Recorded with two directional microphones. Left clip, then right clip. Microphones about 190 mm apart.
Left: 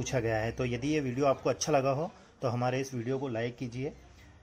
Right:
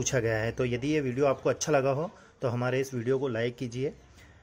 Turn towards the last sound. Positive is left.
turn(degrees=-35)  # may be behind; listen again after turning